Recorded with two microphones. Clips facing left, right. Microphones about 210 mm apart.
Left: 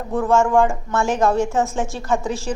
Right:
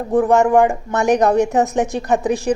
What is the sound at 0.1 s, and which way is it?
A woman's voice, 15° right (ahead or behind).